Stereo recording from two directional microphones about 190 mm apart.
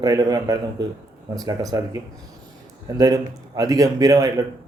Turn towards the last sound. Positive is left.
turn(degrees=-20)  # may be behind; listen again after turning